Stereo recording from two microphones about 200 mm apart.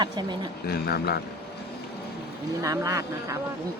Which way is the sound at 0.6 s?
50° left (ahead or behind).